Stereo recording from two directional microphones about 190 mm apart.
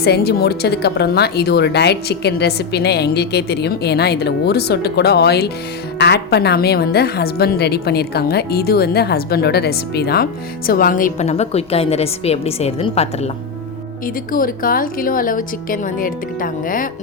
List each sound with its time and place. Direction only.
0.0 s a woman's voice: 55° left (ahead or behind); by 13.3 s 35° left (ahead or behind)
14.3 s speech: 50° left (ahead or behind)